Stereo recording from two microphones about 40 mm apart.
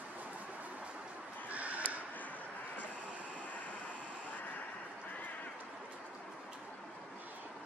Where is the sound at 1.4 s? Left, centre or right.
Right.